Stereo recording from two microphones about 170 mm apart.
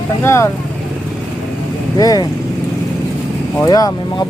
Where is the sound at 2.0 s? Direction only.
20° left (ahead or behind).